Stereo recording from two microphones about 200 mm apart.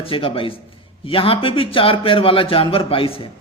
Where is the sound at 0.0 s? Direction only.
25° left (ahead or behind).